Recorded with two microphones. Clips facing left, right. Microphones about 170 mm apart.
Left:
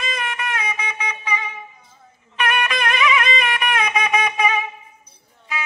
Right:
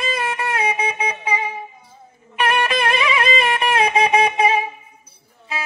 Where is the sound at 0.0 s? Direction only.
30° right (ahead or behind).